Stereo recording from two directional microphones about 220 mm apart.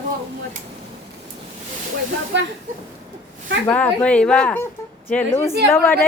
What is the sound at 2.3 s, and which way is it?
Speech, 55° right (ahead or behind).